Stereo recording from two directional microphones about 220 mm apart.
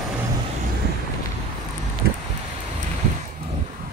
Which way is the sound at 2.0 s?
45° right (ahead or behind).